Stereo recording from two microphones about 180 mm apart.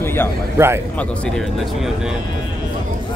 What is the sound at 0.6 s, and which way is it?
Speech, 15° right (ahead or behind).